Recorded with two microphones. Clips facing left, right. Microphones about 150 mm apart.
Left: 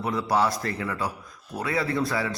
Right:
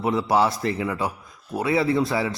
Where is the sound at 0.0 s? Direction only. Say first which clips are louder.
Right 4 dB; 25° right (ahead or behind).